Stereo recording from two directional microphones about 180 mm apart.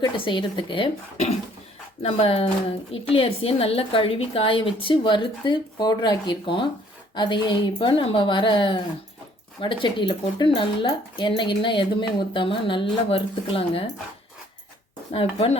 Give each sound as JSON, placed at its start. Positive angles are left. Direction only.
{"t": 0.0, "sound": "a woman's voice", "side_deg": 25}
{"t": 15.1, "sound": "a woman's voice", "side_deg": 30}